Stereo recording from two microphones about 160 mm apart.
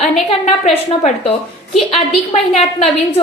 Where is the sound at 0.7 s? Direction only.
40° left (ahead or behind).